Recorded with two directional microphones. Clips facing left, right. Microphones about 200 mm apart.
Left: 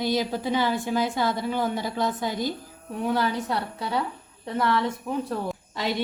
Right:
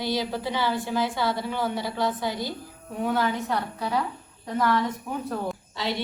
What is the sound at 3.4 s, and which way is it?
Speech, 30° left (ahead or behind).